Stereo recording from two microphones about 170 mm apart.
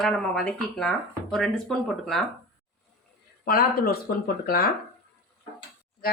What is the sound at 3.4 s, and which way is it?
Speech, 65° left (ahead or behind).